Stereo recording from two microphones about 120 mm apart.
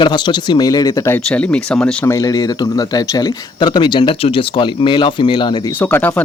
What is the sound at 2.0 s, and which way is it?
Speech, 30° left (ahead or behind).